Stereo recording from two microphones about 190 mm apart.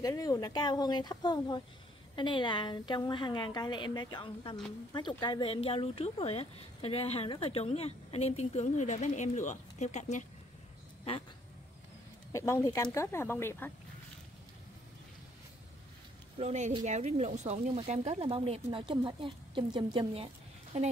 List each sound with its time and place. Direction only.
0.0 s a woman's voice: 15° left (ahead or behind); by 10.2 s 40° left (ahead or behind)
12.3 s speech: 15° left (ahead or behind)
16.3 s speech: 35° right (ahead or behind)